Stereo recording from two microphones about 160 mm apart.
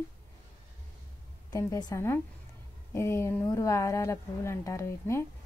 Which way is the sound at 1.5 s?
20° left (ahead or behind).